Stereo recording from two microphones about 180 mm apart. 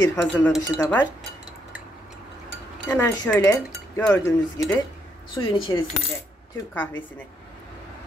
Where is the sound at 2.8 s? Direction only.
15° left (ahead or behind).